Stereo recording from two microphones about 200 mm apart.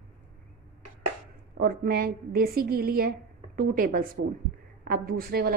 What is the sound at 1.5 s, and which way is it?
A woman's voice, 50° right (ahead or behind).